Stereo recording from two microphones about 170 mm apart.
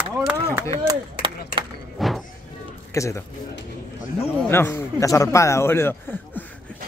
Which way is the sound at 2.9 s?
20° left (ahead or behind).